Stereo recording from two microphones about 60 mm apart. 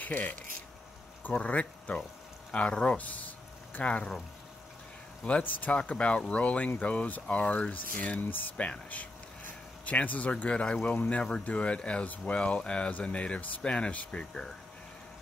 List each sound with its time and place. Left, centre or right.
0.0 s speech: left
5.2 s speech: left
9.8 s speech: left